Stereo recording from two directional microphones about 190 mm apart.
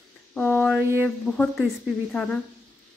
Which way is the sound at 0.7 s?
10° right (ahead or behind).